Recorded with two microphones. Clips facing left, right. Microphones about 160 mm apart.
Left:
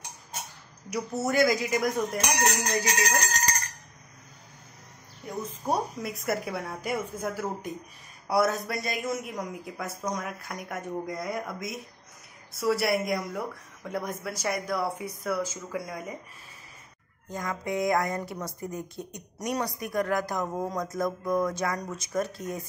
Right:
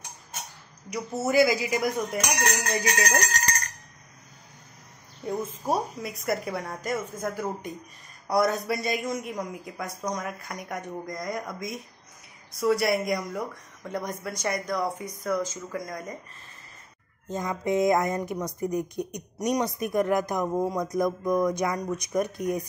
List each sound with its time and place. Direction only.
0.8 s a man's voice: centre (ahead or behind)
5.7 s a man's voice: centre (ahead or behind)
17.3 s a woman's voice: 20° right (ahead or behind)